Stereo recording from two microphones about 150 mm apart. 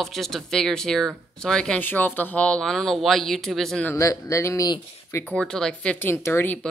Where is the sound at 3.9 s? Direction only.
20° left (ahead or behind).